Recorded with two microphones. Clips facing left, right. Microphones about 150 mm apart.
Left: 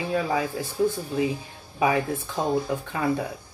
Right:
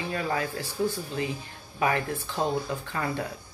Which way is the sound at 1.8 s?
10° left (ahead or behind).